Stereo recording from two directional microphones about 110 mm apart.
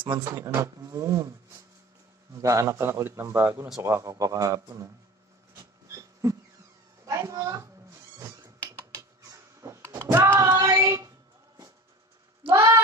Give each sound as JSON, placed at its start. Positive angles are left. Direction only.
{"t": 0.2, "sound": "a man's voice", "side_deg": -30}
{"t": 2.4, "sound": "a man's voice", "side_deg": -30}
{"t": 5.6, "sound": "a sound", "side_deg": -30}
{"t": 10.4, "sound": "female singing", "side_deg": -25}
{"t": 10.8, "sound": "a sound", "side_deg": -35}
{"t": 12.4, "sound": "speech", "side_deg": -25}